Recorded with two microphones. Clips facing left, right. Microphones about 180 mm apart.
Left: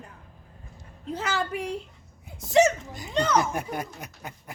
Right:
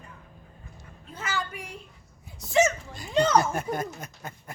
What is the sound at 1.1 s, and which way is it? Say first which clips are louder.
Speech: left 4 dB; 70° left (ahead or behind).